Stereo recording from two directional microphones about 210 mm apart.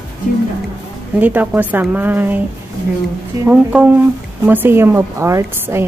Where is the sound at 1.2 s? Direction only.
10° right (ahead or behind).